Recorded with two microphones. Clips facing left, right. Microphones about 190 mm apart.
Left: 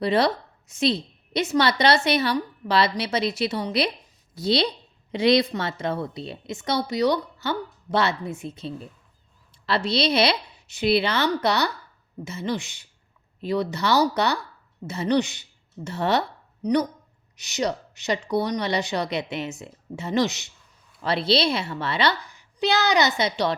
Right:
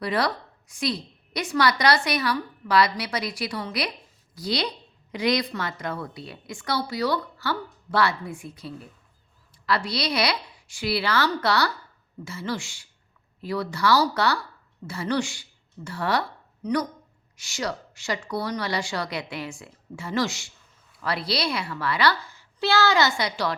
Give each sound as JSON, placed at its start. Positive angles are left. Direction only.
{"t": 0.0, "sound": "a woman's voice", "side_deg": 25}
{"t": 17.3, "sound": "a woman's voice", "side_deg": 20}